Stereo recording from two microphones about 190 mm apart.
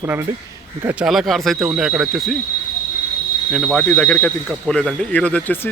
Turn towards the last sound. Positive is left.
turn(degrees=10)  # may be behind; listen again after turning